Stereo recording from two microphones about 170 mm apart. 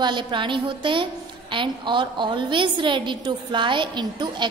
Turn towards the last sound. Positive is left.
turn(degrees=-25)  # may be behind; listen again after turning